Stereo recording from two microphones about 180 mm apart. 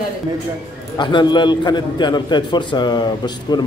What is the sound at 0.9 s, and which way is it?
A man's voice, 25° left (ahead or behind).